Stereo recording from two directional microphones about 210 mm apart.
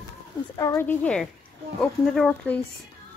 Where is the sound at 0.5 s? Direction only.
15° left (ahead or behind).